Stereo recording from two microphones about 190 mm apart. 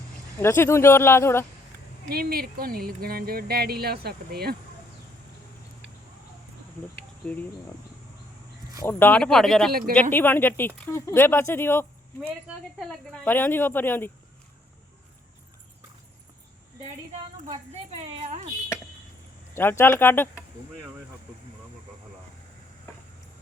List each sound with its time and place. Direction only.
0.3 s speech: 10° left (ahead or behind)
2.1 s speech: 55° right (ahead or behind)
8.8 s speech: 10° left (ahead or behind)
12.8 s speech: centre (ahead or behind)
17.5 s a sound: 30° right (ahead or behind)
19.5 s speech: 10° left (ahead or behind)